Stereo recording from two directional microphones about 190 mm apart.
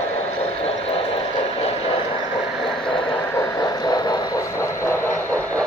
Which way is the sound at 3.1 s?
15° left (ahead or behind).